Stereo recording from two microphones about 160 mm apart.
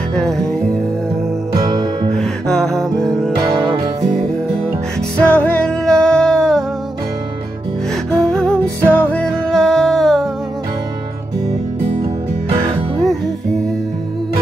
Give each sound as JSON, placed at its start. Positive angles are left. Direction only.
{"t": 0.1, "sound": "music", "side_deg": 5}
{"t": 1.5, "sound": "music", "side_deg": -30}
{"t": 2.1, "sound": "music", "side_deg": 5}
{"t": 5.2, "sound": "music", "side_deg": 10}
{"t": 8.1, "sound": "music", "side_deg": 5}
{"t": 12.6, "sound": "music", "side_deg": 0}